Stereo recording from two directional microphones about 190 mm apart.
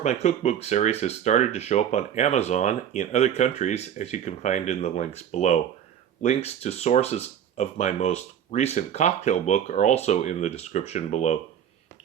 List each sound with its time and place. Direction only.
0.0 s speech: 35° left (ahead or behind)